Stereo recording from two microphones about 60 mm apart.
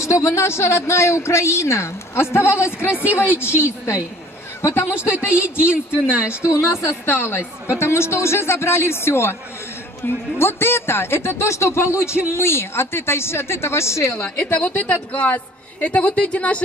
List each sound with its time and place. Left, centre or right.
0.0 s a man's voice: left
4.9 s speech: centre
6.5 s speech: left
14.4 s a woman's voice: left